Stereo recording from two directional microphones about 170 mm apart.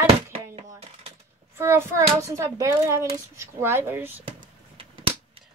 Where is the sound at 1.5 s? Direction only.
15° right (ahead or behind).